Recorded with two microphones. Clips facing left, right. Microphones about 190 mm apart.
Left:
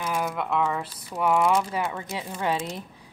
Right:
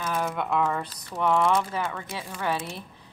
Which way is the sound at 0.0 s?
10° left (ahead or behind).